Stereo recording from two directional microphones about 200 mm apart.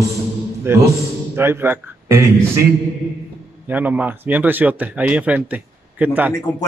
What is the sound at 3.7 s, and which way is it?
Speech, 10° right (ahead or behind).